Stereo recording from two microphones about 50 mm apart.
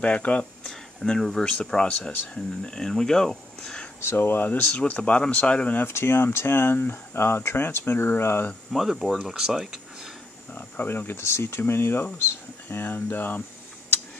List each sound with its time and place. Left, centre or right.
0.0 s speech: left
0.7 s speech: centre
4.0 s speech: left
4.7 s speech: left
5.9 s speech: left
8.9 s speech: centre
9.2 s speech: centre
10.5 s speech: left
11.4 s speech: left